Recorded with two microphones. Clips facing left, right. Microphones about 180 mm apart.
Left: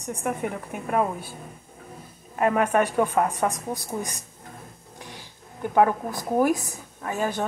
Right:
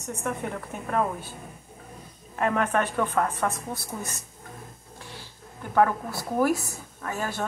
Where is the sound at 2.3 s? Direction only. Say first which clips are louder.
Left 3 dB; 10° left (ahead or behind).